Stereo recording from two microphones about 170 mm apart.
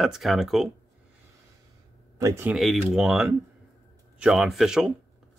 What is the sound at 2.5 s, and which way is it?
Speech, centre (ahead or behind).